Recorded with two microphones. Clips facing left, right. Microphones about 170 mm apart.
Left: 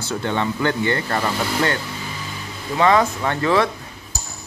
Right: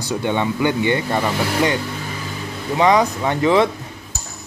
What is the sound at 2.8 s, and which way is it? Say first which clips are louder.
Speech: right 1 dB; 15° right (ahead or behind).